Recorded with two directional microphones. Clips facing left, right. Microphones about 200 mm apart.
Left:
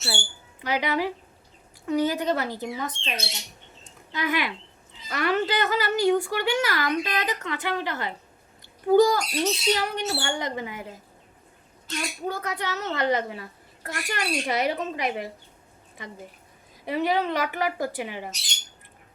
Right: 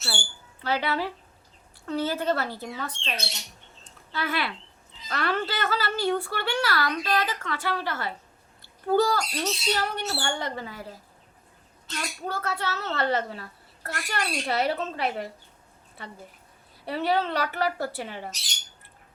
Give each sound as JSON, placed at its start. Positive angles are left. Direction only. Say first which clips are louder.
{"t": 0.0, "sound": "a woman's voice", "louder": "left 3 dB", "side_deg": 20}
{"t": 4.1, "sound": "a woman's voice", "louder": "left 3 dB", "side_deg": 15}
{"t": 11.9, "sound": "a woman's voice", "louder": "left 2 dB", "side_deg": 15}
{"t": 16.8, "sound": "a woman's voice", "louder": "left 1 dB", "side_deg": 15}